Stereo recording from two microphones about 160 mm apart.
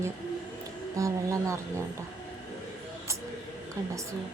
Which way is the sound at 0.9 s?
20° right (ahead or behind).